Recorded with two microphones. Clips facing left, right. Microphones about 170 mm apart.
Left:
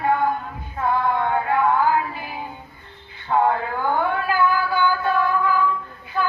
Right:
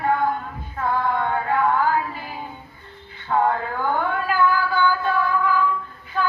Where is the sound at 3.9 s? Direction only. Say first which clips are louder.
Left 1 dB; 15° left (ahead or behind).